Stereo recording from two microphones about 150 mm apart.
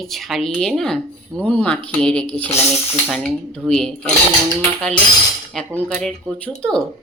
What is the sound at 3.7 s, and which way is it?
Speech, 5° left (ahead or behind).